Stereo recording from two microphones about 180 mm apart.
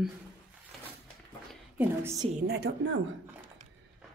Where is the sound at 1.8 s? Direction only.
15° right (ahead or behind).